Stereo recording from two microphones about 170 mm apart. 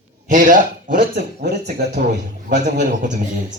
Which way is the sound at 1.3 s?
75° right (ahead or behind).